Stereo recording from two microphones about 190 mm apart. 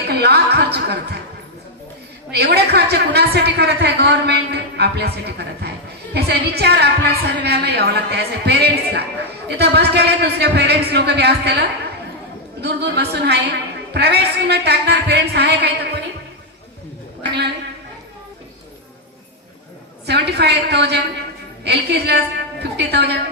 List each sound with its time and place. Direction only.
0.1 s chuckle: 60° right (ahead or behind)
2.3 s a woman's voice: 55° right (ahead or behind)
12.6 s a woman's voice: 60° right (ahead or behind)
20.1 s a woman's voice: 60° right (ahead or behind)